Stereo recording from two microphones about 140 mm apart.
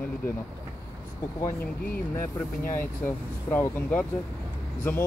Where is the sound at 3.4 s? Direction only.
15° left (ahead or behind).